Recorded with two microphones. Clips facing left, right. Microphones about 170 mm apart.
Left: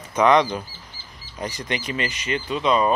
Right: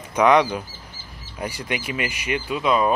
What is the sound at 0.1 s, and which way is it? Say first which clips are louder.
Speech: right 1 dB; 10° right (ahead or behind).